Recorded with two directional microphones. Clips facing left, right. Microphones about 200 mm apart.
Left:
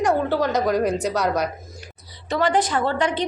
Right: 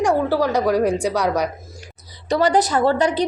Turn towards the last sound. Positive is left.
turn(degrees=-40)  # may be behind; listen again after turning